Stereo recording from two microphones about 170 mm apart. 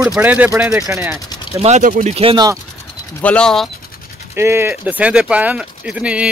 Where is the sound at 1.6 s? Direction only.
45° right (ahead or behind).